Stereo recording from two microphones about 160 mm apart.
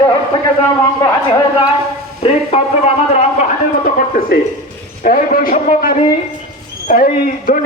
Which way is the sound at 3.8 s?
65° left (ahead or behind).